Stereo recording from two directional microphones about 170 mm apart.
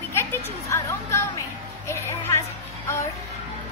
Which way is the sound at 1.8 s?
15° left (ahead or behind).